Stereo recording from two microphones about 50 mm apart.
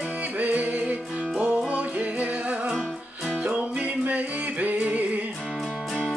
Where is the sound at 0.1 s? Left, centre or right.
Right.